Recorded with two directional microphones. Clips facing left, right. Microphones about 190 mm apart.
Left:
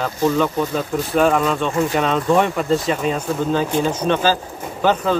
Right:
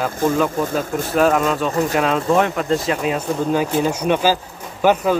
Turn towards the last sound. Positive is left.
turn(degrees=-10)  # may be behind; listen again after turning